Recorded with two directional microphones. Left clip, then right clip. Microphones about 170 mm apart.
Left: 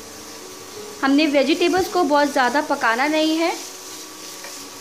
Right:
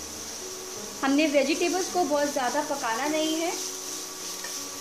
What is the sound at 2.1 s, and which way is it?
Speech, 45° left (ahead or behind).